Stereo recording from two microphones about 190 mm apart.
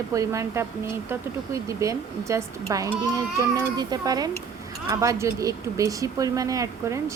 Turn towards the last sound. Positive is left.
turn(degrees=-15)  # may be behind; listen again after turning